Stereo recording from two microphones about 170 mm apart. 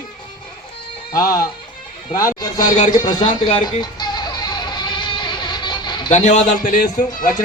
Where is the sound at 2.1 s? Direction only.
20° left (ahead or behind).